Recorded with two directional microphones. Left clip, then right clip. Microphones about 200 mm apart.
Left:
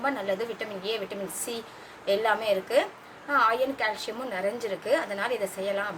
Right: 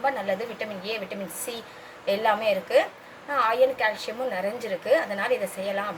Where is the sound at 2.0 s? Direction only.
15° left (ahead or behind).